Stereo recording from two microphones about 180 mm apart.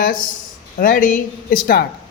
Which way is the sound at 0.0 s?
50° left (ahead or behind).